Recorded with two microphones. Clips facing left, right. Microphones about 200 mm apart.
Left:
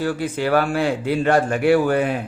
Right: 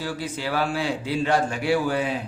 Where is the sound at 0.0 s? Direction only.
55° left (ahead or behind).